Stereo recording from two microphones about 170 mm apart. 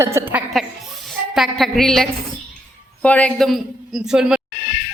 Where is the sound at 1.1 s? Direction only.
Centre (ahead or behind).